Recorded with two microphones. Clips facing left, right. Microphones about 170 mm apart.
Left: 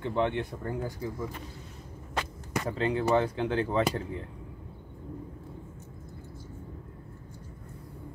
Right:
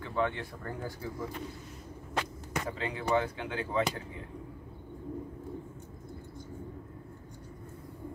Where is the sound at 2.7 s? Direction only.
35° left (ahead or behind).